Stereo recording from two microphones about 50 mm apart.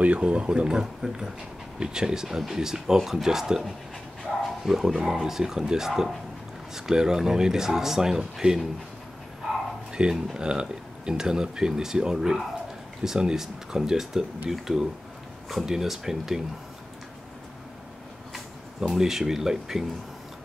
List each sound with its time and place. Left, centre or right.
0.0 s speech: right
9.9 s speech: centre
18.8 s speech: centre